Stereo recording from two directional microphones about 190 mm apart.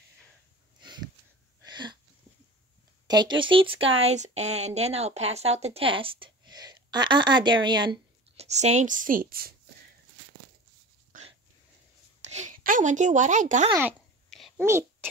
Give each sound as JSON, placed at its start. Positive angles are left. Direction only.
{"t": 0.7, "sound": "sniff", "side_deg": -25}
{"t": 1.7, "sound": "sneeze", "side_deg": -25}
{"t": 3.1, "sound": "speech", "side_deg": -25}
{"t": 8.5, "sound": "a woman's voice", "side_deg": -35}
{"t": 12.2, "sound": "speech", "side_deg": -35}
{"t": 14.6, "sound": "a child's voice", "side_deg": -15}